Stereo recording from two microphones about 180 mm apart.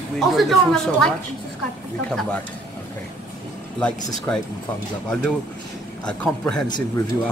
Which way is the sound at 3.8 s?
5° left (ahead or behind).